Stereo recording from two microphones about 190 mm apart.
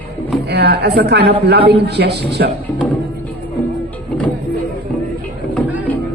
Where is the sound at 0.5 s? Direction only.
60° right (ahead or behind).